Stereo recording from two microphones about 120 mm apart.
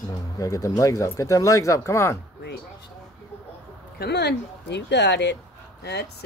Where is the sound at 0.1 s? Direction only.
30° left (ahead or behind).